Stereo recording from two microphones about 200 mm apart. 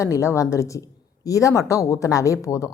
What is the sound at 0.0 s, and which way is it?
Speech, 15° left (ahead or behind).